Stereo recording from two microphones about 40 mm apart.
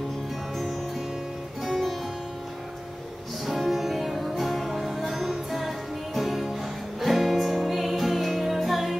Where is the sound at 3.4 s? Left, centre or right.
Centre.